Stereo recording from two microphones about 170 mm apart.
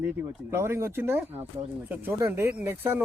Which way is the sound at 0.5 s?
15° right (ahead or behind).